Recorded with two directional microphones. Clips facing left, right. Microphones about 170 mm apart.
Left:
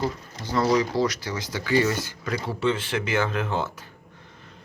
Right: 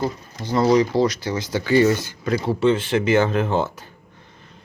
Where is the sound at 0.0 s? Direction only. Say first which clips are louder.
Right 3 dB; 20° right (ahead or behind).